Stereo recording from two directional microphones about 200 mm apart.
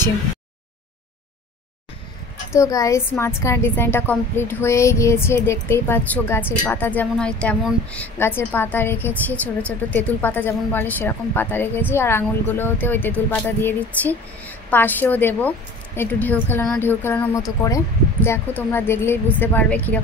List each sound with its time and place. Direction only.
2.5 s a woman's voice: 15° left (ahead or behind)